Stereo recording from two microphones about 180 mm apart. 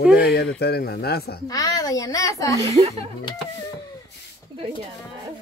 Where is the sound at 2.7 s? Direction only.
35° right (ahead or behind).